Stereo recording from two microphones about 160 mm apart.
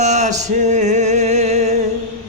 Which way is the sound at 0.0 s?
45° right (ahead or behind).